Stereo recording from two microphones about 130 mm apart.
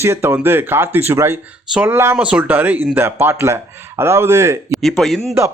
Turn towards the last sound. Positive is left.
turn(degrees=0)  # may be behind; listen again after turning